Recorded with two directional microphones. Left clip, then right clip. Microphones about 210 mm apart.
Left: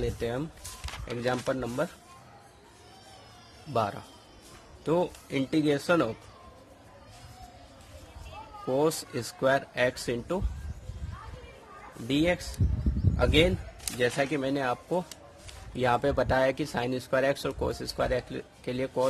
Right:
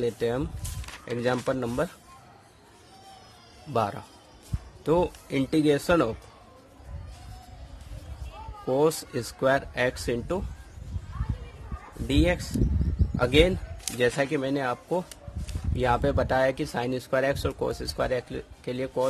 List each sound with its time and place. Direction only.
0.0 s speech: 20° right (ahead or behind)
3.7 s speech: 15° right (ahead or behind)
8.6 s speech: 15° right (ahead or behind)
12.1 s speech: 15° right (ahead or behind)